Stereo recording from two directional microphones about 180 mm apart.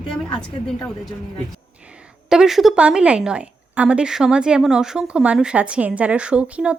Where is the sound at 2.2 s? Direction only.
5° right (ahead or behind).